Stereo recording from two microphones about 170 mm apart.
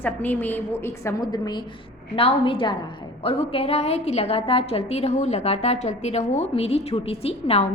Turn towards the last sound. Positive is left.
turn(degrees=35)  # may be behind; listen again after turning